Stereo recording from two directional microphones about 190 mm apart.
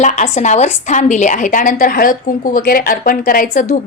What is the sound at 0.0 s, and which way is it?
A woman's voice, 40° left (ahead or behind).